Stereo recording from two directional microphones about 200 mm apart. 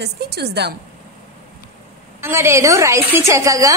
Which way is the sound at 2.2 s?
15° right (ahead or behind).